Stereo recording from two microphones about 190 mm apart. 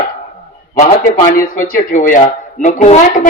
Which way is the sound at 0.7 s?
40° left (ahead or behind).